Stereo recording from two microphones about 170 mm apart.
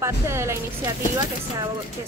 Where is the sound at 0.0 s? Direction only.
15° right (ahead or behind).